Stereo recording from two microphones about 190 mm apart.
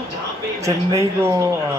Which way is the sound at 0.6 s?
15° right (ahead or behind).